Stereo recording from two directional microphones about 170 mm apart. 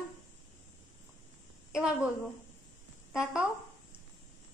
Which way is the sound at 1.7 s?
5° right (ahead or behind).